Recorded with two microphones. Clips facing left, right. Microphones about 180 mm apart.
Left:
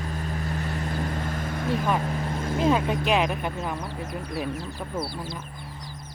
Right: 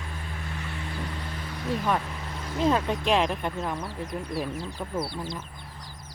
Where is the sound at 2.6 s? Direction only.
5° left (ahead or behind).